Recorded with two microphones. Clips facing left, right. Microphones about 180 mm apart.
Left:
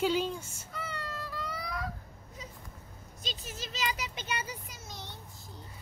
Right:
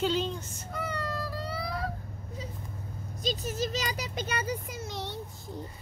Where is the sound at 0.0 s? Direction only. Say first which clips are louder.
Even; 10° left (ahead or behind).